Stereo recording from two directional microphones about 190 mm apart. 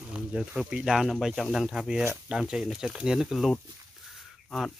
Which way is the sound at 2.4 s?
Centre (ahead or behind).